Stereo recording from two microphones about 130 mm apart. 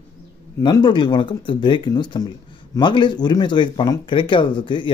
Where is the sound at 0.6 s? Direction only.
30° left (ahead or behind).